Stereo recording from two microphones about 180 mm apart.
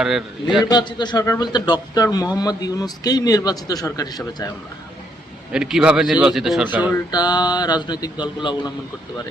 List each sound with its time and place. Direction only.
0.0 s a man's voice: centre (ahead or behind)
0.7 s a man's voice: 25° left (ahead or behind)
5.5 s a man's voice: 5° right (ahead or behind)
6.9 s a man's voice: 25° left (ahead or behind)